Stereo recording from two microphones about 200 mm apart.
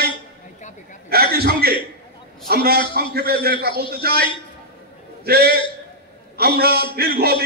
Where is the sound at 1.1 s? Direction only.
50° right (ahead or behind).